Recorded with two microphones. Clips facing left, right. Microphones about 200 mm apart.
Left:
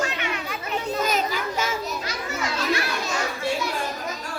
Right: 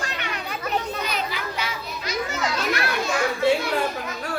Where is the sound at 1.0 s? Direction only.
45° left (ahead or behind).